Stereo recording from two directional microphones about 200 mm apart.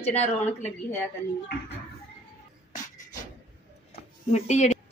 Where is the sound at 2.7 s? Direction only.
20° left (ahead or behind).